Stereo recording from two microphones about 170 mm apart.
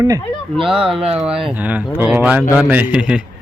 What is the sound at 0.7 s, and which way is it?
Speech, 5° right (ahead or behind).